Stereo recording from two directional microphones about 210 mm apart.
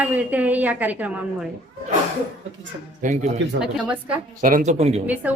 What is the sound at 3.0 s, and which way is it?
Speech, 35° right (ahead or behind).